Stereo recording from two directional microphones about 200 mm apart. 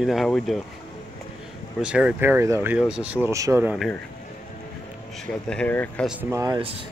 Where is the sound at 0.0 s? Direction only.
Centre (ahead or behind).